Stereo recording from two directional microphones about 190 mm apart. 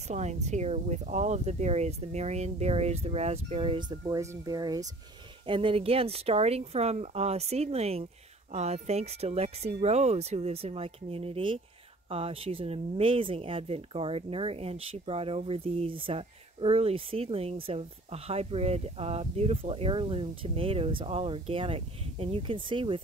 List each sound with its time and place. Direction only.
0.1 s speech: 35° right (ahead or behind)